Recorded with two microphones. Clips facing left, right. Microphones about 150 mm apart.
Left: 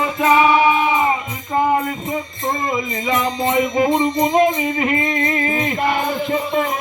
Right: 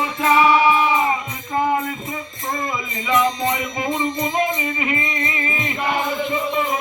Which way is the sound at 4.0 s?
55° left (ahead or behind).